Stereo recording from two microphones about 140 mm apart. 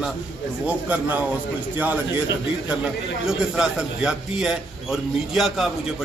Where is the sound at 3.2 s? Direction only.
5° right (ahead or behind).